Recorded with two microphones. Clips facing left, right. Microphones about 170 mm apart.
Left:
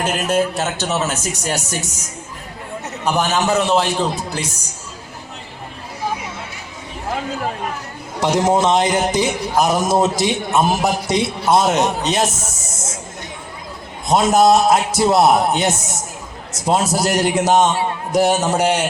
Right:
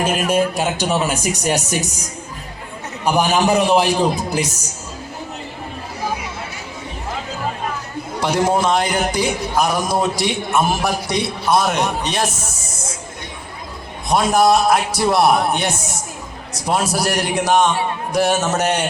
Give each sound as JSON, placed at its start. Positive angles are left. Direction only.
{"t": 0.0, "sound": "speech", "side_deg": -10}
{"t": 3.0, "sound": "speech", "side_deg": -15}
{"t": 8.2, "sound": "a man's voice", "side_deg": 20}
{"t": 14.1, "sound": "a man's voice", "side_deg": 20}